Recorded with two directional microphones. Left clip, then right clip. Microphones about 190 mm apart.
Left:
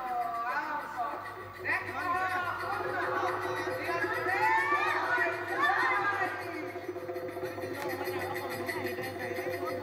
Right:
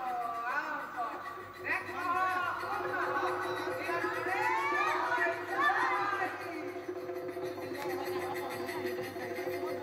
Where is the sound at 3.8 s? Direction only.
15° left (ahead or behind).